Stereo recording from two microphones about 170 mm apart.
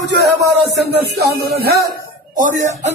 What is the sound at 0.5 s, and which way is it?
Speech, 75° right (ahead or behind).